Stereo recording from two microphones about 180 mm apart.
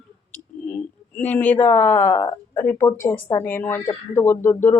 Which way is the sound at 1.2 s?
10° left (ahead or behind).